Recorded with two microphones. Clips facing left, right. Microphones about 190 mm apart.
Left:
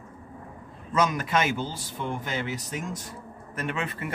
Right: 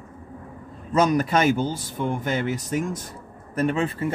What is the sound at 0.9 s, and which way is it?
Speech, 40° right (ahead or behind).